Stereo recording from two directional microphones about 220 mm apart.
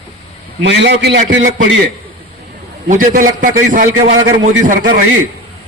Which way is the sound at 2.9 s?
40° right (ahead or behind).